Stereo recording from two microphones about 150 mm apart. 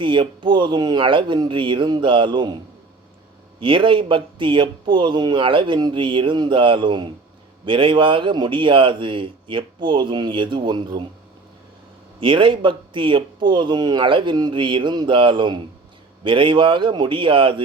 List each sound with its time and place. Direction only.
0.0 s speech: 35° right (ahead or behind)
3.6 s speech: 35° right (ahead or behind)
12.2 s speech: 35° right (ahead or behind)